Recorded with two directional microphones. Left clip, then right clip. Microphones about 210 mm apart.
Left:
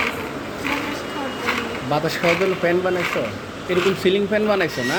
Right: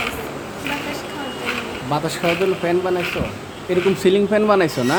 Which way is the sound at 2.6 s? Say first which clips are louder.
Left 2 dB; 5° right (ahead or behind).